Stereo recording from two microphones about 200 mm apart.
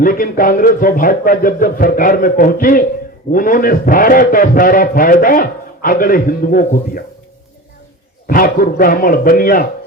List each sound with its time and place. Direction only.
0.0 s a man's voice: 45° left (ahead or behind)
8.3 s a man's voice: 45° left (ahead or behind)